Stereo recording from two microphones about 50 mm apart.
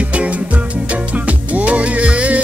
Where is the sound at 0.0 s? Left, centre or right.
Right.